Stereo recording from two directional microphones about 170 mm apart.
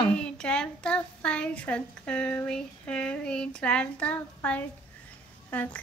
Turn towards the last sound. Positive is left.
turn(degrees=10)  # may be behind; listen again after turning